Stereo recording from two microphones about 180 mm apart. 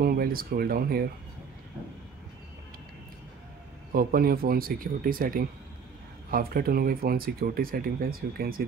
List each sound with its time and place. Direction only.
0.0 s speech: 55° right (ahead or behind)
3.9 s speech: 55° right (ahead or behind)